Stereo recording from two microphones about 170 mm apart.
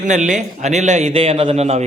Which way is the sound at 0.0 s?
45° right (ahead or behind).